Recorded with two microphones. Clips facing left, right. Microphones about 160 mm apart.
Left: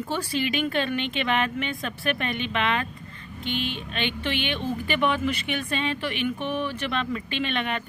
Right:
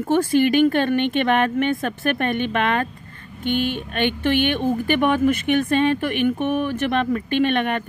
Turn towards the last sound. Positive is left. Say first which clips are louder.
# right 8 dB
turn(degrees=-50)  # may be behind; listen again after turning